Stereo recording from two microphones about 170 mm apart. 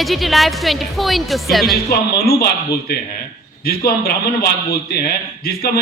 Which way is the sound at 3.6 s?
65° left (ahead or behind).